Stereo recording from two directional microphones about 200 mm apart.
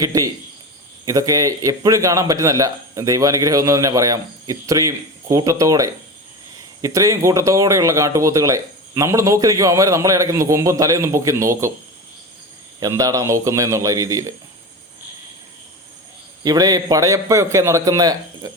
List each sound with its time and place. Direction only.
0.0 s speech: 15° right (ahead or behind)
12.8 s speech: 15° right (ahead or behind)
16.4 s speech: 20° right (ahead or behind)